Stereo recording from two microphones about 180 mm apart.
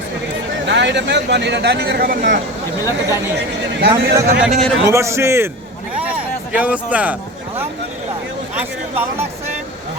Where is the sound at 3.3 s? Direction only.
70° right (ahead or behind).